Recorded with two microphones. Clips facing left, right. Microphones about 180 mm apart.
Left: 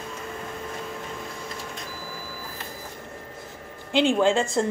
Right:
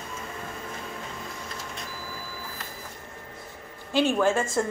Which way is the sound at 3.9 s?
15° left (ahead or behind).